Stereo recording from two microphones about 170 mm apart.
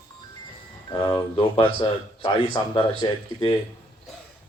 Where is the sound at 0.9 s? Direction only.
25° left (ahead or behind).